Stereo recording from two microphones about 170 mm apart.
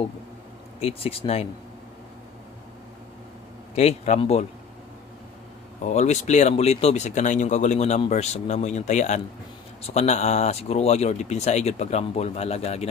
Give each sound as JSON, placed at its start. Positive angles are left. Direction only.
{"t": 0.7, "sound": "speech", "side_deg": 35}
{"t": 3.7, "sound": "speech", "side_deg": 40}
{"t": 5.9, "sound": "speech", "side_deg": 45}